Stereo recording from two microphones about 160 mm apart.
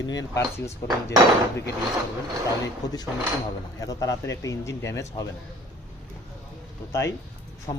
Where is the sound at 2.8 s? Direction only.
25° left (ahead or behind).